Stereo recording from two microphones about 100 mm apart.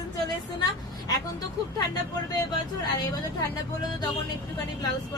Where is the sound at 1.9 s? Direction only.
35° left (ahead or behind).